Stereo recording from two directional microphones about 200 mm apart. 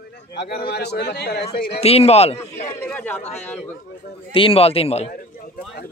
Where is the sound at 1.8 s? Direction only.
30° left (ahead or behind).